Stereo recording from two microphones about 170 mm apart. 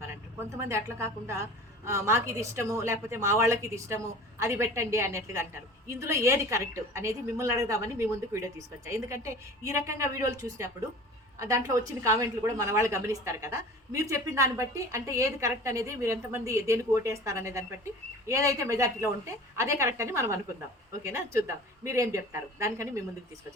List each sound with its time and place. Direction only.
0.1 s a woman's voice: 15° right (ahead or behind)